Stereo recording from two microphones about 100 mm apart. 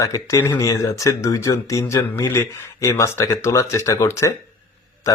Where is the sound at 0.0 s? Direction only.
35° left (ahead or behind).